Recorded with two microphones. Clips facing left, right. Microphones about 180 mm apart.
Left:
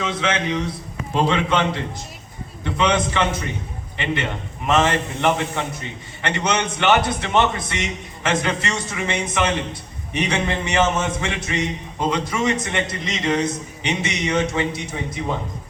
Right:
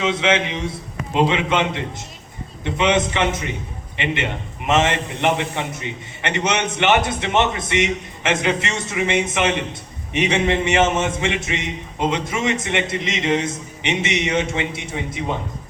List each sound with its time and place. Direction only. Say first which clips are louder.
0.0 s a man's voice: right 4 dB; 25° right (ahead or behind)
2.6 s a man's voice: right 1 dB; 20° right (ahead or behind)